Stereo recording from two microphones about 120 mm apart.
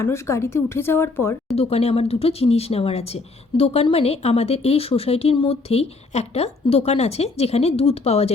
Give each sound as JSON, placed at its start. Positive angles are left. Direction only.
{"t": 0.0, "sound": "speech", "side_deg": 25}
{"t": 1.5, "sound": "speech", "side_deg": 60}